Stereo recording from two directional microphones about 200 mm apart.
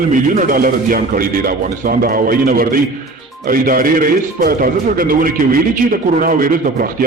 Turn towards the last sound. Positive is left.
turn(degrees=-45)  # may be behind; listen again after turning